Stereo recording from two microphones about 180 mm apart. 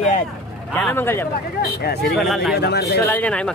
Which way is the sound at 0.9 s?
15° left (ahead or behind).